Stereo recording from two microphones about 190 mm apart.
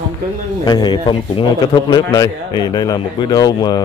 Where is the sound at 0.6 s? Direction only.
20° left (ahead or behind).